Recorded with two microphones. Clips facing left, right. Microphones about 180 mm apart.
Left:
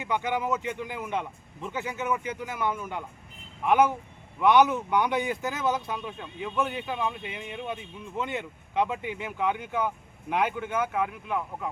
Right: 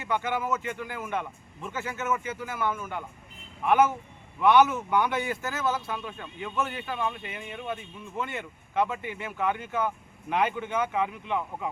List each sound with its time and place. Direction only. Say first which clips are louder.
0.0 s speech: left 1 dB; 15° left (ahead or behind)